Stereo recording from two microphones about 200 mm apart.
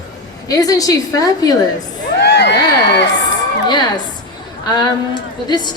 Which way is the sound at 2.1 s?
60° left (ahead or behind).